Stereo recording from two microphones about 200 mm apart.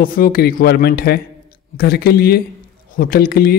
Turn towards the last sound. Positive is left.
turn(degrees=50)  # may be behind; listen again after turning